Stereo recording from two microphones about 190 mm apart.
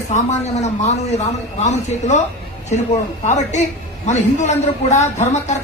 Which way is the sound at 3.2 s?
40° left (ahead or behind).